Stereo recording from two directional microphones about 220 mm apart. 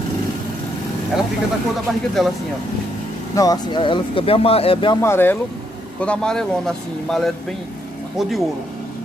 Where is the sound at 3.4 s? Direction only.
20° left (ahead or behind).